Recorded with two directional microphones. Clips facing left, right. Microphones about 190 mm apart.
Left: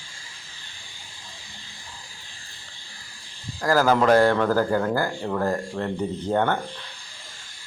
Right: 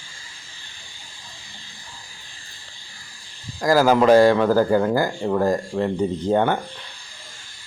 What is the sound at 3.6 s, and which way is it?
Speech, 15° right (ahead or behind).